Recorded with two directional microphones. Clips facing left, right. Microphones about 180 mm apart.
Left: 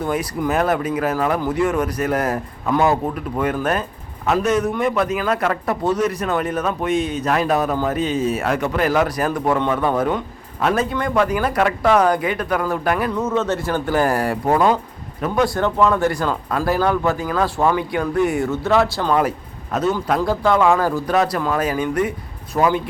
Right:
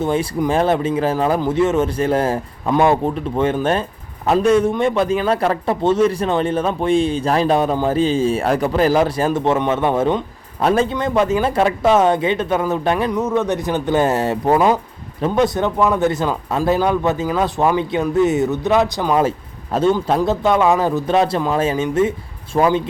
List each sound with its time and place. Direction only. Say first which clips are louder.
0.0 s speech: right 3 dB; 25° right (ahead or behind)